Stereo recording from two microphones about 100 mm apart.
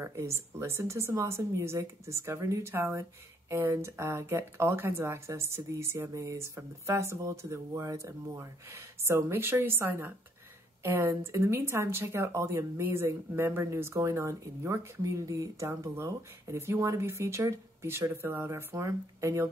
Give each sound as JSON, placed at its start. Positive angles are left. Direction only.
{"t": 0.0, "sound": "speech", "side_deg": -25}